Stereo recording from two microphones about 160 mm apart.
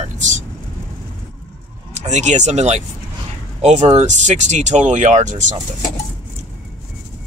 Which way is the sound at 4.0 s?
50° right (ahead or behind).